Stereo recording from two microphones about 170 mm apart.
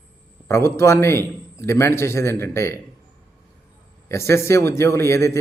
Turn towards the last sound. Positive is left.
turn(degrees=15)  # may be behind; listen again after turning